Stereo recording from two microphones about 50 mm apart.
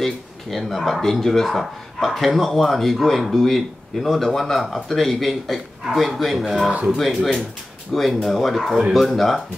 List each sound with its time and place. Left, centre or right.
0.0 s speech: centre
6.7 s speech: right
7.1 s speech: centre